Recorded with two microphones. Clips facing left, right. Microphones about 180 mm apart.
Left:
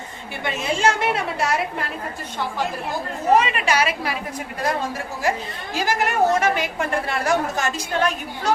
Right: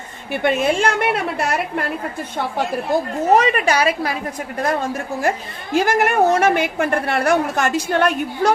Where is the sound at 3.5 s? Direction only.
35° right (ahead or behind).